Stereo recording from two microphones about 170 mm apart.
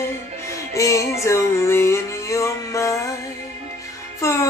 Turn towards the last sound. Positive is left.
turn(degrees=15)  # may be behind; listen again after turning